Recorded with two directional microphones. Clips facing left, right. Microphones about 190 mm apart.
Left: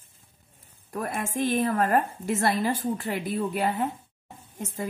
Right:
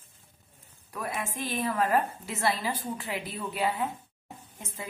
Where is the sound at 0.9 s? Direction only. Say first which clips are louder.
Left 5 dB; 50° left (ahead or behind).